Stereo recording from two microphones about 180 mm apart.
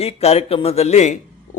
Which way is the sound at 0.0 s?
35° left (ahead or behind).